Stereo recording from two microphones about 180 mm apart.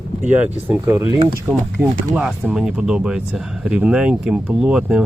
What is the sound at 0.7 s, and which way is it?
Speech, 15° right (ahead or behind).